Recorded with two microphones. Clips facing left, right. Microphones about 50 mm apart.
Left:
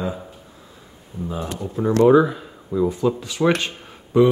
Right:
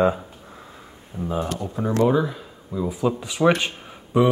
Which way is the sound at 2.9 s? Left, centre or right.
Centre.